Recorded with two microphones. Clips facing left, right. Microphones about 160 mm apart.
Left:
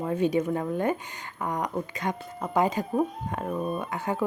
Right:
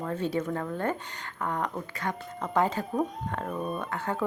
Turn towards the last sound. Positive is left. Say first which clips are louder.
# left 2 dB
turn(degrees=10)  # may be behind; listen again after turning